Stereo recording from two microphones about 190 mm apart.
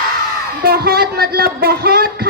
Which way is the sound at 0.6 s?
55° right (ahead or behind).